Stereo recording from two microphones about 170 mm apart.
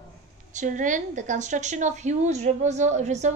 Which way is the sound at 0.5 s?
50° right (ahead or behind).